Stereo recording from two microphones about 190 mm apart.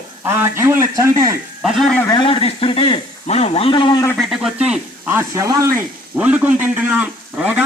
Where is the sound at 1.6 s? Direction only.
Centre (ahead or behind).